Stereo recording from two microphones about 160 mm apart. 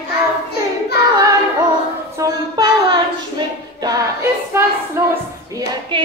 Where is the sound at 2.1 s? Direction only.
25° right (ahead or behind).